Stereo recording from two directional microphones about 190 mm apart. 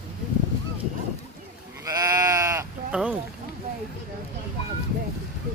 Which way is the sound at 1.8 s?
20° right (ahead or behind).